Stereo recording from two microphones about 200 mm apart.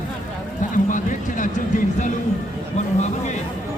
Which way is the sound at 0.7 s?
40° left (ahead or behind).